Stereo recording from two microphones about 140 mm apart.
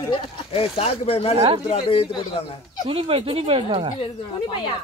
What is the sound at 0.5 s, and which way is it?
Speech, 45° left (ahead or behind).